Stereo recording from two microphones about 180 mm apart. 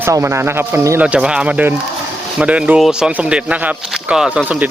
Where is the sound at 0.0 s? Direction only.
15° right (ahead or behind).